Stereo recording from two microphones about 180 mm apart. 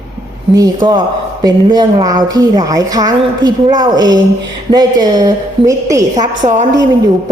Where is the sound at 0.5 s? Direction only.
20° right (ahead or behind).